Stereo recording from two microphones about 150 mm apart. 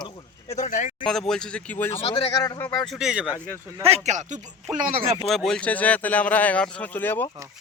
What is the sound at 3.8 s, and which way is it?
Speech, 45° right (ahead or behind).